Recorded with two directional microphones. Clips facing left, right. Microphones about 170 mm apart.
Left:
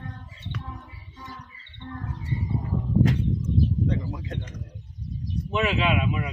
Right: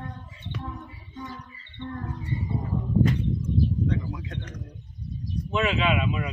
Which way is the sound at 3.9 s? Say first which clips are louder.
Even; 35° left (ahead or behind).